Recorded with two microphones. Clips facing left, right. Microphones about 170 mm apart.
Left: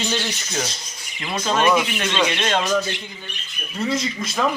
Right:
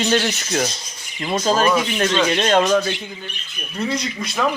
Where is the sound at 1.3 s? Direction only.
35° right (ahead or behind).